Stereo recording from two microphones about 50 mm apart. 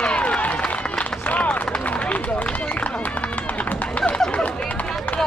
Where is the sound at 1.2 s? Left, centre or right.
Left.